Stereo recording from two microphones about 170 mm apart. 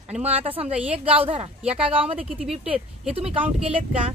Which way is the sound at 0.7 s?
10° right (ahead or behind).